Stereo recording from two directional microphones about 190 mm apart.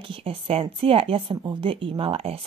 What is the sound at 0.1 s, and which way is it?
A woman's voice, 30° right (ahead or behind).